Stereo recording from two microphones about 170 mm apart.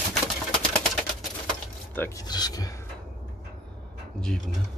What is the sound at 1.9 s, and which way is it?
Speech, 15° left (ahead or behind).